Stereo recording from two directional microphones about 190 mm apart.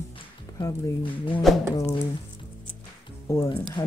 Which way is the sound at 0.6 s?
20° left (ahead or behind).